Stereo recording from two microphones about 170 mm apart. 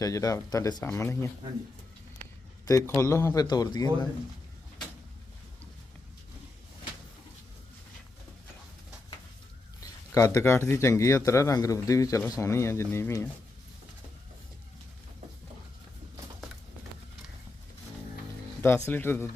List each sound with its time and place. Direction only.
0.0 s speech: 20° left (ahead or behind)
2.6 s speech: 20° left (ahead or behind)
10.1 s speech: 20° left (ahead or behind)
18.9 s speech: 10° left (ahead or behind)